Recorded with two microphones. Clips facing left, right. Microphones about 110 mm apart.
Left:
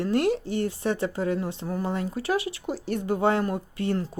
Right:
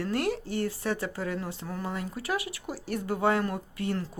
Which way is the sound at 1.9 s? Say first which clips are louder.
Left 5 dB; 25° left (ahead or behind).